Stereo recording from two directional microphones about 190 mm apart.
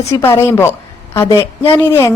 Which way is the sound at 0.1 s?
15° left (ahead or behind).